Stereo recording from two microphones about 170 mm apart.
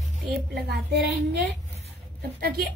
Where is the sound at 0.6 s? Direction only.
70° right (ahead or behind).